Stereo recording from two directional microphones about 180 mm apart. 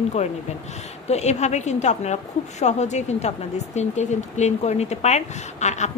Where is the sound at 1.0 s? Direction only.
40° left (ahead or behind).